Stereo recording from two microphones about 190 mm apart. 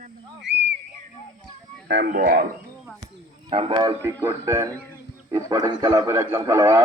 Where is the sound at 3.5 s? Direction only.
30° right (ahead or behind).